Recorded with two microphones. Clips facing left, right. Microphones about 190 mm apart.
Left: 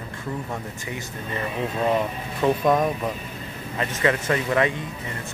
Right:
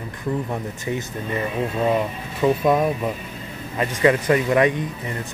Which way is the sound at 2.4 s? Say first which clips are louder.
Right 2 dB; 5° right (ahead or behind).